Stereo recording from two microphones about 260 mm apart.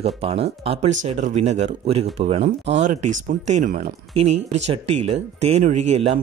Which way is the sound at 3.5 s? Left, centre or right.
Right.